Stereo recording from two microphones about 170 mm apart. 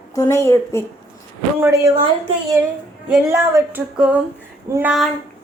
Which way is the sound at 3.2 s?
15° right (ahead or behind).